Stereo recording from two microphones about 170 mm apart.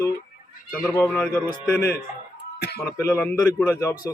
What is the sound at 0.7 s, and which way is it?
A man's voice, 10° left (ahead or behind).